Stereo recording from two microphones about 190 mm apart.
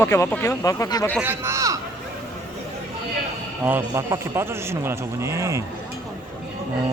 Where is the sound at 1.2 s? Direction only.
10° right (ahead or behind).